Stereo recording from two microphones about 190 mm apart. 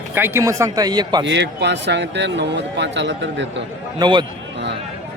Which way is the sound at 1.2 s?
65° right (ahead or behind).